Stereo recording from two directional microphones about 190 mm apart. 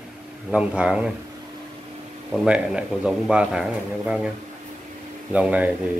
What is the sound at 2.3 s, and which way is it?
Speech, 5° right (ahead or behind).